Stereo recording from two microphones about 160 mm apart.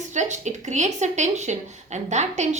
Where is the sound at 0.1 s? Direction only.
50° right (ahead or behind).